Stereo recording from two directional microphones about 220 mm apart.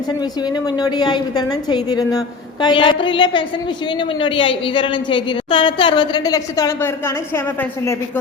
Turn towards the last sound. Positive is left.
turn(degrees=10)  # may be behind; listen again after turning